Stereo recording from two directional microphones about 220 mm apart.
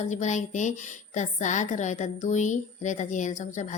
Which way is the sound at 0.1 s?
30° left (ahead or behind).